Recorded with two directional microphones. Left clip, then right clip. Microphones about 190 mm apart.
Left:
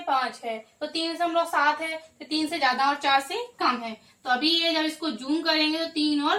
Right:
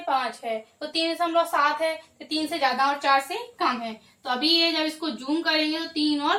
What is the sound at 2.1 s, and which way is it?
A woman's voice, 15° right (ahead or behind).